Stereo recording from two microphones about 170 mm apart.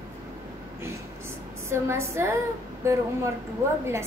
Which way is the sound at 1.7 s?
15° right (ahead or behind).